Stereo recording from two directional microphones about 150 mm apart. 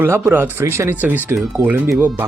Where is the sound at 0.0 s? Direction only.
15° right (ahead or behind).